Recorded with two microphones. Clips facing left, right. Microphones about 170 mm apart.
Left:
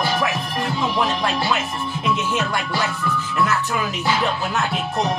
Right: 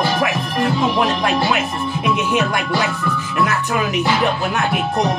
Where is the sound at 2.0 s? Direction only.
15° right (ahead or behind).